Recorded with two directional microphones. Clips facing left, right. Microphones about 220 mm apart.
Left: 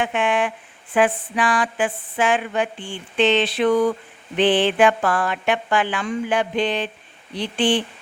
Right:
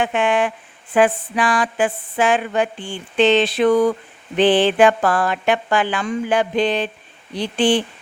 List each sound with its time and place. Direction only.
0.0 s speech: 40° right (ahead or behind)